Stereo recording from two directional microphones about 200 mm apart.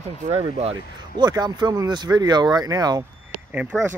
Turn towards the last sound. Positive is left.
turn(degrees=-10)  # may be behind; listen again after turning